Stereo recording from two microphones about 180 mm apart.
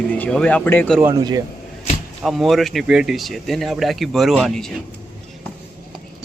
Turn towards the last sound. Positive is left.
turn(degrees=0)  # may be behind; listen again after turning